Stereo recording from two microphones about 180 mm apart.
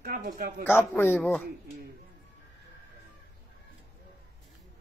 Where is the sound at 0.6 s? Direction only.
10° left (ahead or behind).